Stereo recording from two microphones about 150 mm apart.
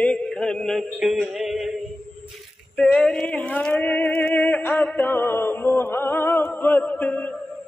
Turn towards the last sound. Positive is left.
turn(degrees=10)  # may be behind; listen again after turning